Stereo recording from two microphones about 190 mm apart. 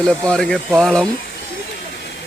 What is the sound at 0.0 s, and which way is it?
Speech, 5° left (ahead or behind).